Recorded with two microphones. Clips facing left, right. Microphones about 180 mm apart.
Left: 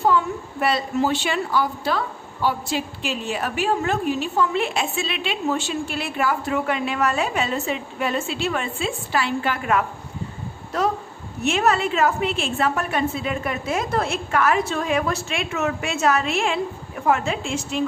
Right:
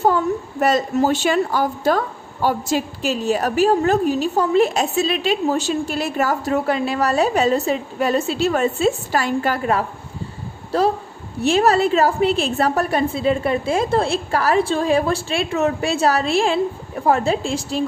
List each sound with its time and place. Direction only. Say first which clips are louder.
0.0 s a woman's voice: right 3 dB; 45° right (ahead or behind)